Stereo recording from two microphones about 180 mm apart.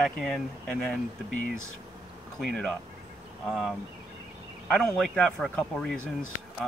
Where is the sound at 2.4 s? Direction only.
Centre (ahead or behind).